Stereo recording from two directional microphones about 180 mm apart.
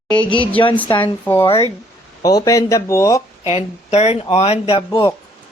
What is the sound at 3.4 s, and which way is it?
Speech, 35° left (ahead or behind).